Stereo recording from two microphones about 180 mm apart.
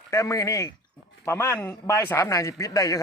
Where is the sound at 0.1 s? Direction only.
15° left (ahead or behind).